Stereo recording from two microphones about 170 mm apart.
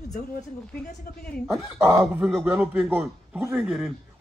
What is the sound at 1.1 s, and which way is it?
Speech, 55° left (ahead or behind).